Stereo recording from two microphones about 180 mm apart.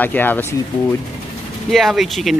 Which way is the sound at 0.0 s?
10° left (ahead or behind).